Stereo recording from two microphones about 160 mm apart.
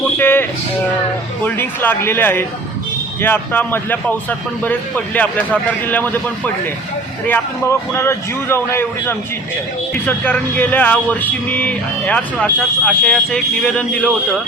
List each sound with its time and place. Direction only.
0.2 s music: 15° left (ahead or behind)
1.5 s speech: 10° left (ahead or behind)